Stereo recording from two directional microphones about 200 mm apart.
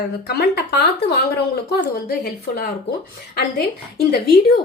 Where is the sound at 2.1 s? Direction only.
50° left (ahead or behind).